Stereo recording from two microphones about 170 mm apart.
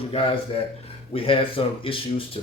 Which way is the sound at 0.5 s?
30° left (ahead or behind).